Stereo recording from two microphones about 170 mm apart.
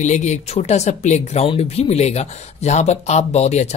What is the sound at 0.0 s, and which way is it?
Speech, 40° left (ahead or behind).